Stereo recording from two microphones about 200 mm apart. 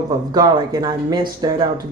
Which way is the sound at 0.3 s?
20° right (ahead or behind).